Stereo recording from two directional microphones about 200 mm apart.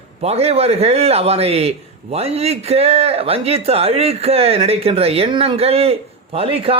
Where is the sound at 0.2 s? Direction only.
30° right (ahead or behind).